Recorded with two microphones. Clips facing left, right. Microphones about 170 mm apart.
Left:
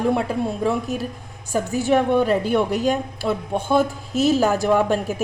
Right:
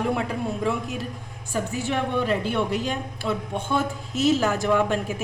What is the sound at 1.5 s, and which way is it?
A woman's voice, 40° left (ahead or behind).